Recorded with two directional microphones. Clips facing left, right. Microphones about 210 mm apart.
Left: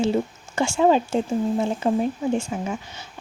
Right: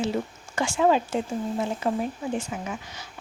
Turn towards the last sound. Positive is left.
turn(degrees=30)  # may be behind; listen again after turning